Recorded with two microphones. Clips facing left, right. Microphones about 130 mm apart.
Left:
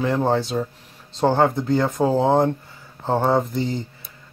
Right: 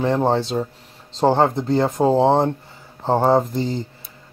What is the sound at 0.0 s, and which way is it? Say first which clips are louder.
Speech: right 2 dB; 30° right (ahead or behind).